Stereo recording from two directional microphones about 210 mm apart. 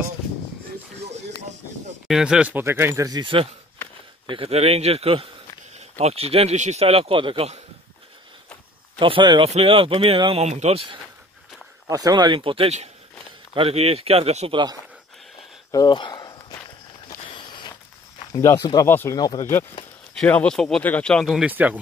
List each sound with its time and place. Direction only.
2.0 s speech: 5° right (ahead or behind); by 7.6 s 30° right (ahead or behind)
9.0 s speech: 25° right (ahead or behind)
15.7 s walk: 20° left (ahead or behind)
17.3 s a sound: 20° left (ahead or behind)
18.3 s speech: 15° left (ahead or behind); by 21.7 s 5° right (ahead or behind)